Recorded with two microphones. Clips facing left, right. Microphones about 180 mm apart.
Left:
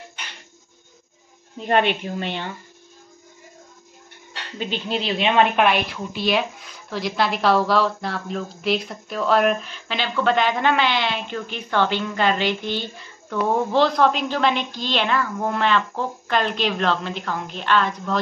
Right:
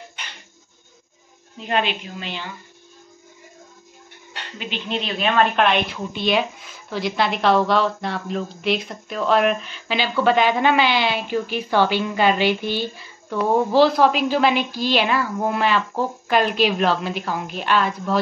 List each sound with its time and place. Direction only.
1.7 s speech: 55° left (ahead or behind)
4.6 s speech: 30° left (ahead or behind); by 5.8 s 15° left (ahead or behind)
5.9 s a woman's voice: centre (ahead or behind)